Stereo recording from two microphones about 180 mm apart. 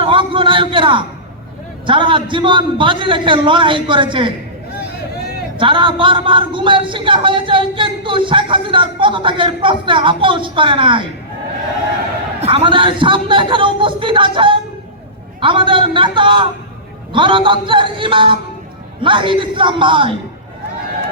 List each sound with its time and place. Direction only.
0.0 s a man's voice: 30° right (ahead or behind)
5.5 s speech: 30° right (ahead or behind)
12.4 s speech: 35° right (ahead or behind)